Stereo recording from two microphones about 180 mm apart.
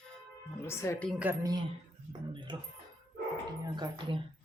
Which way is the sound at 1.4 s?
25° right (ahead or behind).